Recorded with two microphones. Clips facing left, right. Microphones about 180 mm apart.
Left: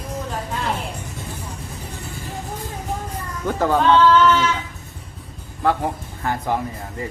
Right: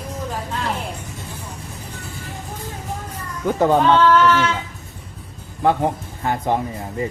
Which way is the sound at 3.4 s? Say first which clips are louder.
Right 2 dB; 20° right (ahead or behind).